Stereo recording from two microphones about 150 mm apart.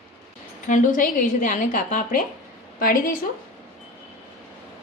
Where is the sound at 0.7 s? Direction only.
60° left (ahead or behind).